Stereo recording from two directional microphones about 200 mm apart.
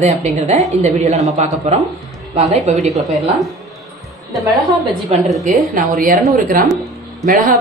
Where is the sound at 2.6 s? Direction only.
35° right (ahead or behind).